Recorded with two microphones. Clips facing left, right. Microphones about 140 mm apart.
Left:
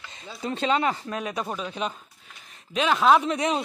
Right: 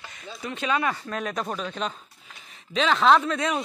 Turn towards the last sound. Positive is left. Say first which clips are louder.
# left 1 dB
turn(degrees=20)  # may be behind; listen again after turning